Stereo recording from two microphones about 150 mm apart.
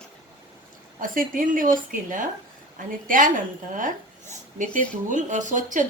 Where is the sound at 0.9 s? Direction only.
65° right (ahead or behind).